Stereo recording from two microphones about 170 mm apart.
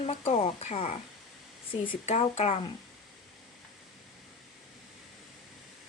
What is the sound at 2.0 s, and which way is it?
Speech, 40° left (ahead or behind).